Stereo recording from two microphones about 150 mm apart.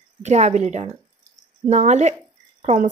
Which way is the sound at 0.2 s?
50° right (ahead or behind).